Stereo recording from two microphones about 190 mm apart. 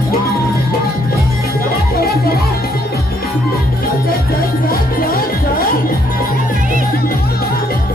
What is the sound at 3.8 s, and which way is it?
Music, 50° left (ahead or behind).